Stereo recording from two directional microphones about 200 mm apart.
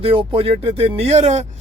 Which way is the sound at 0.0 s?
25° right (ahead or behind).